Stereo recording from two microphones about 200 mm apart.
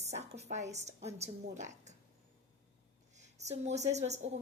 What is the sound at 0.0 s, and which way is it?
A woman's voice, 35° right (ahead or behind).